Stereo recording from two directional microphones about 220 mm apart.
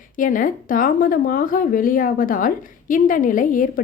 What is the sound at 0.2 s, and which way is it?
A woman's voice, 35° left (ahead or behind).